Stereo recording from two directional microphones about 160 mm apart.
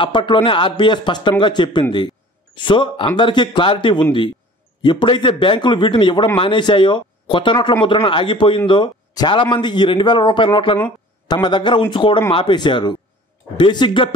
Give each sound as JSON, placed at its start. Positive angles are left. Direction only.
{"t": 0.0, "sound": "a man's voice", "side_deg": 30}